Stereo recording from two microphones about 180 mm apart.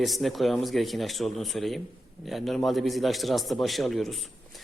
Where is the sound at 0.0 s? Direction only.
Centre (ahead or behind).